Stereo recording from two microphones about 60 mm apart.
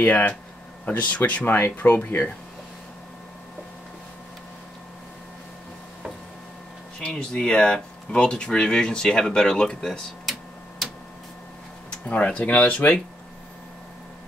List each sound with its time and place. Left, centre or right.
0.0 s speech: left
7.1 s speech: centre
12.1 s speech: left